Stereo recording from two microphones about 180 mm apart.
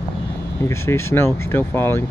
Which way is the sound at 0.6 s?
15° left (ahead or behind).